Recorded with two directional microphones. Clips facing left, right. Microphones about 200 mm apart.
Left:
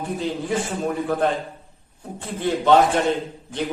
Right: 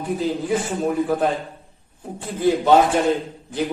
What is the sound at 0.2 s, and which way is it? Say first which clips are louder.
A man's voice: right 2 dB; 5° right (ahead or behind).